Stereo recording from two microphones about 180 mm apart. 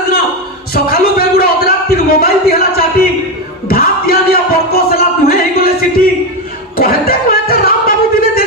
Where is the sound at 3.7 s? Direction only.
55° left (ahead or behind).